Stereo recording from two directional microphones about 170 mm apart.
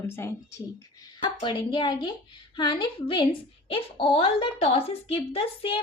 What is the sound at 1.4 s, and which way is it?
A woman's voice, 30° left (ahead or behind).